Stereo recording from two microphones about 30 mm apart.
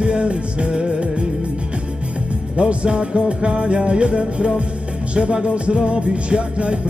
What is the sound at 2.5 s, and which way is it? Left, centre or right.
Music, right.